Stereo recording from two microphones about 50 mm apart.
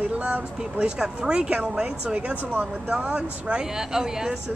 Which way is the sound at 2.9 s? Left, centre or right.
Right.